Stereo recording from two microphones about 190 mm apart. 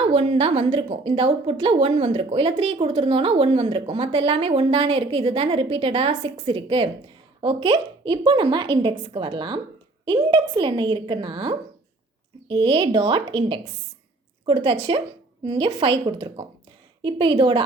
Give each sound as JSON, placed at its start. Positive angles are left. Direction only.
{"t": 0.0, "sound": "a woman's voice", "side_deg": -30}